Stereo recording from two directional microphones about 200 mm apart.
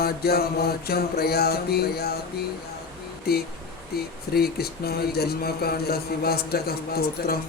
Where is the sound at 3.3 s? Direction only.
50° left (ahead or behind).